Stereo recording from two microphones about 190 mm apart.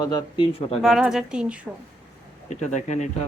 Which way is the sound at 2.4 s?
40° left (ahead or behind).